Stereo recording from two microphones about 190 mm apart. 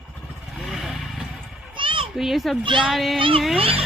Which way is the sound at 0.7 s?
Centre (ahead or behind).